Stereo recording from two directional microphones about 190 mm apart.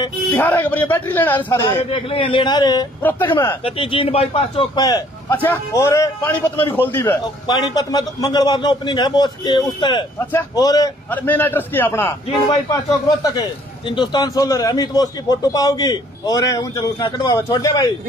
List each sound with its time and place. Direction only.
0.3 s a man's voice: 10° left (ahead or behind)
1.9 s a man's voice: 30° left (ahead or behind)
3.0 s a man's voice: 10° left (ahead or behind)
3.6 s a man's voice: 25° left (ahead or behind); by 7.2 s 10° left (ahead or behind)
7.4 s a man's voice: 20° left (ahead or behind)
11.1 s a man's voice: 10° left (ahead or behind)
13.2 s a man's voice: 20° left (ahead or behind)